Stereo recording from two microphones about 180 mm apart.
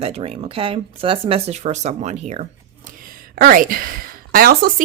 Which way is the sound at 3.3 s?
50° right (ahead or behind).